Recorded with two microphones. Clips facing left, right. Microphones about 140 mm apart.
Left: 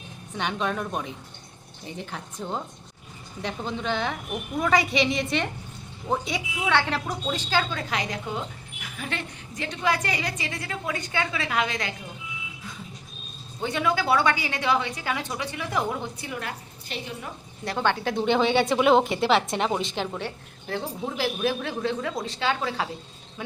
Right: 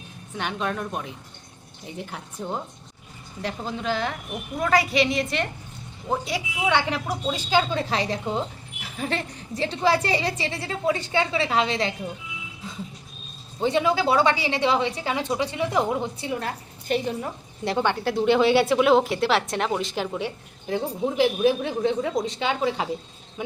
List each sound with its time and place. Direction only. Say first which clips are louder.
0.3 s speech: even; centre (ahead or behind)
7.7 s a woman's voice: right 5 dB; 30° right (ahead or behind)
13.6 s a woman's voice: right 4 dB; 25° right (ahead or behind)
17.7 s speech: right 2 dB; 15° right (ahead or behind)
18.0 s speech: right 5 dB; 5° right (ahead or behind); by 22.9 s 20° right (ahead or behind)